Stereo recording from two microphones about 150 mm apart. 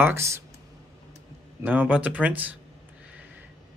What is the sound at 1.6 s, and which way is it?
Speech, 10° right (ahead or behind).